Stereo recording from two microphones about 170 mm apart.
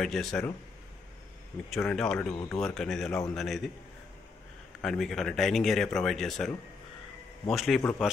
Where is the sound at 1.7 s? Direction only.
5° left (ahead or behind).